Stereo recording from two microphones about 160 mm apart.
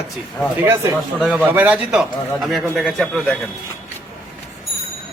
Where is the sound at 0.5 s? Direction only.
15° right (ahead or behind).